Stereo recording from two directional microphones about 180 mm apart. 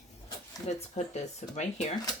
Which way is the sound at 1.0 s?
40° left (ahead or behind).